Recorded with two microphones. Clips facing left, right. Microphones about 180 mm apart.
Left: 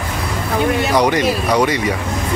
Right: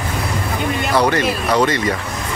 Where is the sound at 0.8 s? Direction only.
15° left (ahead or behind).